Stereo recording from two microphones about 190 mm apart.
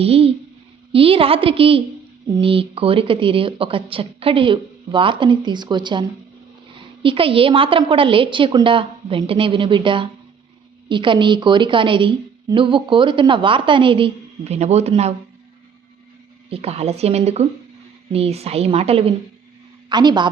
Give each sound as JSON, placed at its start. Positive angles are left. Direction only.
{"t": 0.0, "sound": "a woman's voice", "side_deg": -30}
{"t": 16.5, "sound": "a woman's voice", "side_deg": -30}